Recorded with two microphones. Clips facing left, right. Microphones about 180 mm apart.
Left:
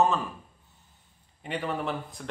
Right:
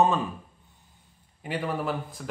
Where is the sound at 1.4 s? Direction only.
5° right (ahead or behind).